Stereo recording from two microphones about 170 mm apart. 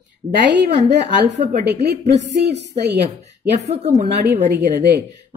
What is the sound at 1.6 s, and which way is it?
Speech, 80° right.